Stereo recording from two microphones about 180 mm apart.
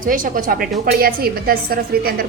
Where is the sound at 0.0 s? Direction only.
50° right (ahead or behind).